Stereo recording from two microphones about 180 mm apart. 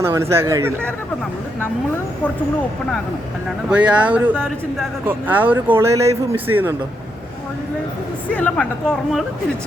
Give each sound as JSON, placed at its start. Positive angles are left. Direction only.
{"t": 0.0, "sound": "speech", "side_deg": -15}
{"t": 3.7, "sound": "speech", "side_deg": -5}
{"t": 4.4, "sound": "speech", "side_deg": 5}
{"t": 5.0, "sound": "speech", "side_deg": -10}
{"t": 8.3, "sound": "a woman's voice", "side_deg": 10}